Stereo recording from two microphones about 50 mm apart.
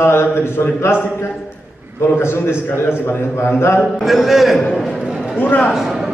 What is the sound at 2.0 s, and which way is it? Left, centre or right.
Speech, left.